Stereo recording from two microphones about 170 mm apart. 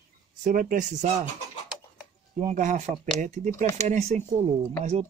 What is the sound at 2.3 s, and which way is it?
Speech, 45° right (ahead or behind).